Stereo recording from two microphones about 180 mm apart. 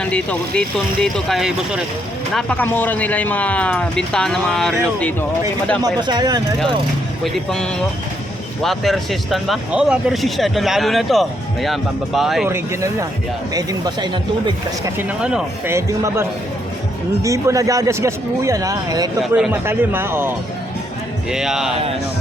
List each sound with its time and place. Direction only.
0.0 s speech: 5° left (ahead or behind)
5.8 s a man's voice: 25° right (ahead or behind)
7.3 s speech: 5° left (ahead or behind)
12.5 s a man's voice: 15° right (ahead or behind)
14.9 s speech: 5° right (ahead or behind)
17.2 s a man's voice: 20° right (ahead or behind); by 21.7 s 5° right (ahead or behind)